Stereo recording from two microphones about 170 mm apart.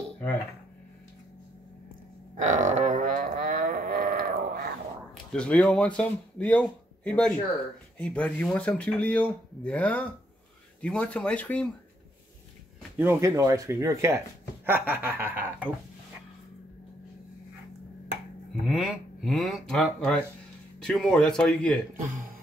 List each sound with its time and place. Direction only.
2.3 s a sound: 45° right (ahead or behind)
5.3 s speech: 5° left (ahead or behind)
12.9 s speech: 15° right (ahead or behind)
18.6 s speech: centre (ahead or behind)